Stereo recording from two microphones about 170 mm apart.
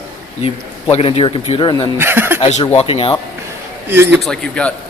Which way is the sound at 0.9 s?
35° left (ahead or behind).